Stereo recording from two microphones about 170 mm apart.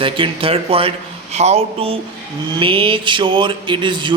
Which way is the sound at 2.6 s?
30° right (ahead or behind).